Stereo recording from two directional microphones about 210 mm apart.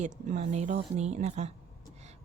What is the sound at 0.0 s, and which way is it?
A woman's voice, 35° right (ahead or behind).